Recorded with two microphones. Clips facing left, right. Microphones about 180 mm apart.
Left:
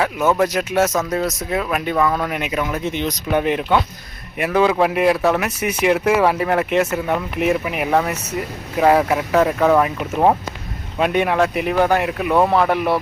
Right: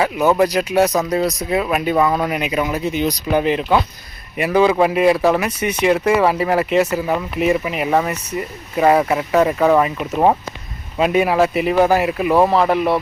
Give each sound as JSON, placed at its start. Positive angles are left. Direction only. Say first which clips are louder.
{"t": 0.0, "sound": "speech", "louder": "right 2 dB", "side_deg": -5}
{"t": 0.9, "sound": "speech", "louder": "right 3 dB", "side_deg": -15}